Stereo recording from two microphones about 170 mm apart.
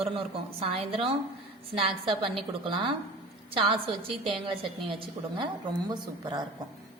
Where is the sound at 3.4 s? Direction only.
30° right (ahead or behind).